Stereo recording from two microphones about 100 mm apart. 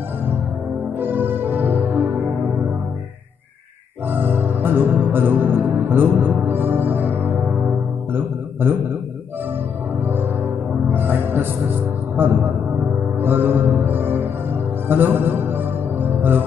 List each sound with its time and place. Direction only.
0.9 s music: 20° right (ahead or behind)
4.1 s music: 20° right (ahead or behind)
10.0 s music: 20° right (ahead or behind)
12.2 s speech: 20° right (ahead or behind)
13.2 s music: 20° right (ahead or behind)